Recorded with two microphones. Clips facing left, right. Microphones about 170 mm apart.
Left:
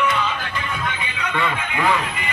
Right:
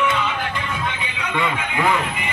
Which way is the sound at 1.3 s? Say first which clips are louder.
Right 1 dB; 15° right (ahead or behind).